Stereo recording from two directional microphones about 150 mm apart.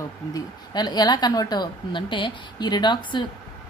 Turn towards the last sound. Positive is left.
turn(degrees=30)  # may be behind; listen again after turning